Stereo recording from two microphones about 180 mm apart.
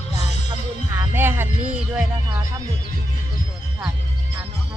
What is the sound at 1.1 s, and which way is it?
Music, 10° right (ahead or behind).